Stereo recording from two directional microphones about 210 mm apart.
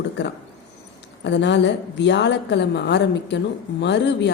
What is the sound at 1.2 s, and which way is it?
A woman's voice, 55° left (ahead or behind).